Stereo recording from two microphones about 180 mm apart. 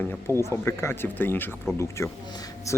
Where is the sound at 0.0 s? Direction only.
10° left (ahead or behind).